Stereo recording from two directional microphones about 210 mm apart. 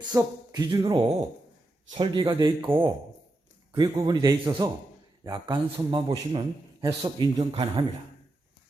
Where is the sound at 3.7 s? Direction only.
20° right (ahead or behind).